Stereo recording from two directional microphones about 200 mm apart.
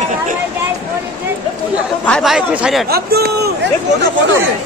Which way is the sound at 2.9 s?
50° right (ahead or behind).